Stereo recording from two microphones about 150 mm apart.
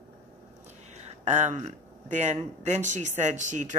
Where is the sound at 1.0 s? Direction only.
50° right (ahead or behind).